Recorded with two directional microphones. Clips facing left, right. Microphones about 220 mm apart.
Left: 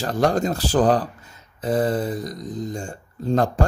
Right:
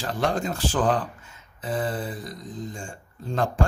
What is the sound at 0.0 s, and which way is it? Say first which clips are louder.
Speech: left 6 dB; 40° left (ahead or behind).